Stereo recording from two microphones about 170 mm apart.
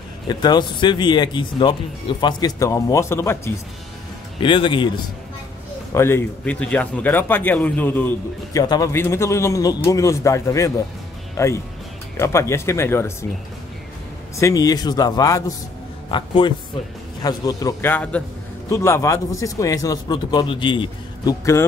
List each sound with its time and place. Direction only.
0.3 s speech: 25° left (ahead or behind)
4.4 s speech: 30° left (ahead or behind)
5.9 s speech: 15° left (ahead or behind)
8.5 s speech: 20° left (ahead or behind)
14.4 s speech: 20° left (ahead or behind)